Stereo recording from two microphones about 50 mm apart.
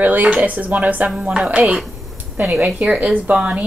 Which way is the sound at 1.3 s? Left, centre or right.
Right.